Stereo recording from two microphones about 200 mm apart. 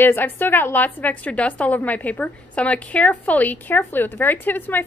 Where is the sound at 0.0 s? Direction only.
10° left (ahead or behind).